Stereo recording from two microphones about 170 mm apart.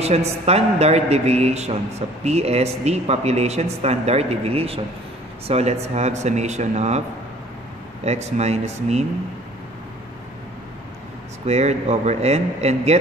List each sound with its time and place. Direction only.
0.0 s a man's voice: 40° right (ahead or behind)
8.0 s a man's voice: 40° right (ahead or behind)
11.4 s a man's voice: 40° right (ahead or behind)